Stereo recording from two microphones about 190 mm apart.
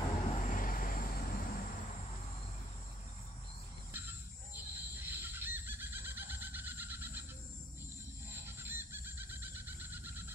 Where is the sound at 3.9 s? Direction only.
10° right (ahead or behind).